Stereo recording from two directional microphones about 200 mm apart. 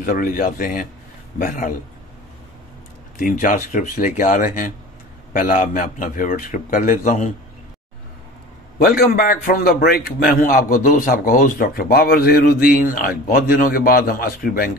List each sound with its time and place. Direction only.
0.0 s a man's voice: 45° left (ahead or behind)
3.2 s a man's voice: 40° left (ahead or behind)
8.7 s a man's voice: 50° left (ahead or behind)